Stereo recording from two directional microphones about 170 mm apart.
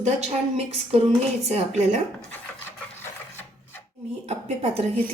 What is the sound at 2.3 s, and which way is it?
Filing, 10° left (ahead or behind).